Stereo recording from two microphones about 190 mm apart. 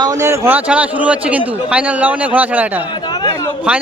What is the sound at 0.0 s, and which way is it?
A man's voice, 15° right (ahead or behind).